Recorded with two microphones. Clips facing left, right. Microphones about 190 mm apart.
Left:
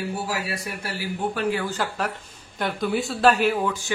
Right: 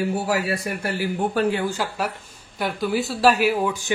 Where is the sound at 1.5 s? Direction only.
15° right (ahead or behind).